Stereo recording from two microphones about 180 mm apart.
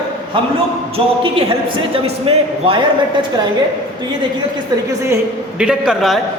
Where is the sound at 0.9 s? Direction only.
30° right (ahead or behind).